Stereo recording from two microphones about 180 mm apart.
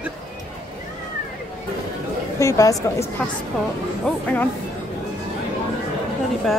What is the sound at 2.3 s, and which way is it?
A woman's voice, 15° left (ahead or behind).